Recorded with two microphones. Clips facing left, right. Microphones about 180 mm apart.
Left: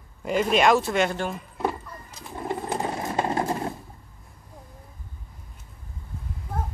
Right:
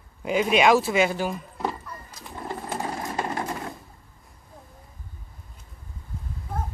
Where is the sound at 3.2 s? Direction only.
30° left (ahead or behind).